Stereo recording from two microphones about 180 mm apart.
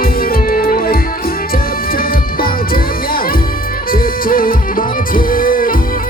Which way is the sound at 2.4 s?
55° left (ahead or behind).